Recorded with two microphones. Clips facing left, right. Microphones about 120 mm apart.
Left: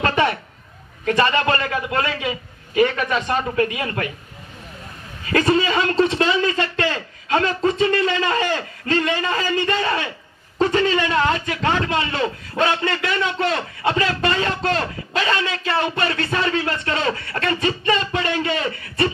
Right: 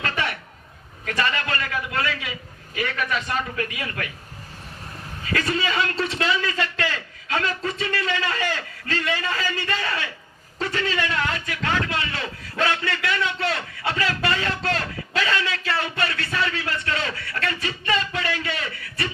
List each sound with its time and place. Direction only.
0.0 s a sound: 30° left (ahead or behind)
1.0 s a man's voice: 25° left (ahead or behind)
5.2 s a man's voice: 30° left (ahead or behind)